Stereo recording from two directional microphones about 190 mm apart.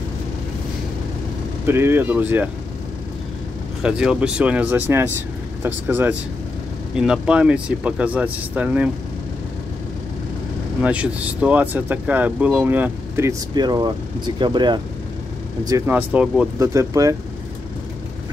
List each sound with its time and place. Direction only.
1.7 s speech: 15° right (ahead or behind)
3.8 s speech: 5° right (ahead or behind)
10.8 s speech: 5° right (ahead or behind)
16.5 s speech: 15° right (ahead or behind)